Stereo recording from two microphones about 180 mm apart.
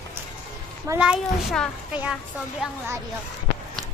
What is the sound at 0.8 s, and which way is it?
A child's voice, 10° right (ahead or behind).